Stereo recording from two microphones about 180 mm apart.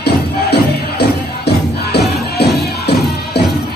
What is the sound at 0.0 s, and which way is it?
Music, 65° left (ahead or behind).